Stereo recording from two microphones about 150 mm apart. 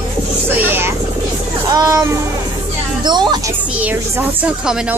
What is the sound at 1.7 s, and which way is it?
Child singing, 25° right (ahead or behind).